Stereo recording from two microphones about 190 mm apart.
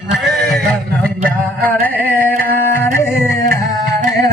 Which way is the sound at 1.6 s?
10° left (ahead or behind).